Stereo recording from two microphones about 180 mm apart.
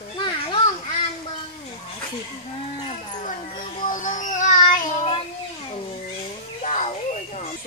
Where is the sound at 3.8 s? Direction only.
45° left (ahead or behind).